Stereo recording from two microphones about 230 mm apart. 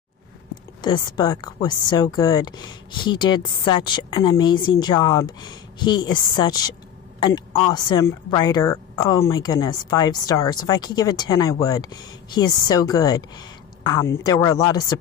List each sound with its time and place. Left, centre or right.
0.8 s speech: centre